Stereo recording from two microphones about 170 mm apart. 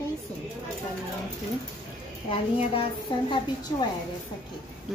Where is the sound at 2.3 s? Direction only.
30° left (ahead or behind).